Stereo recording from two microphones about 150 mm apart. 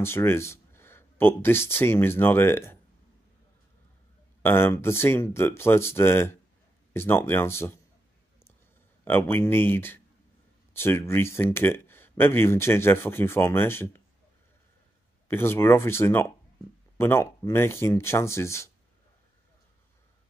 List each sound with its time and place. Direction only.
0.0 s speech: 15° left (ahead or behind)
4.4 s speech: 15° left (ahead or behind)
9.0 s speech: 15° left (ahead or behind)
15.2 s speech: 15° left (ahead or behind)